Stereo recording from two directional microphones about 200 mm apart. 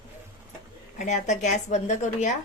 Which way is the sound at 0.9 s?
35° left (ahead or behind).